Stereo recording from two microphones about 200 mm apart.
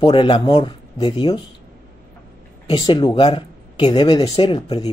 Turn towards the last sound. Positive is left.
turn(degrees=25)  # may be behind; listen again after turning